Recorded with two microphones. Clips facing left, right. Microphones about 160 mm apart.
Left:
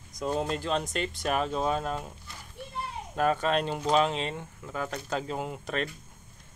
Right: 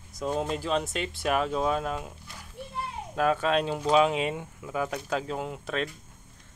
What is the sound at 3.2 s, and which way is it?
Speech, centre (ahead or behind).